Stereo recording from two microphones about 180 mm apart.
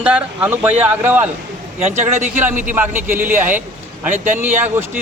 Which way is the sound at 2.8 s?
10° right (ahead or behind).